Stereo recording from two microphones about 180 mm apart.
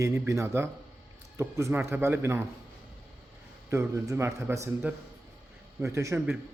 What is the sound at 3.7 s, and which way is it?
Speech, 15° right (ahead or behind).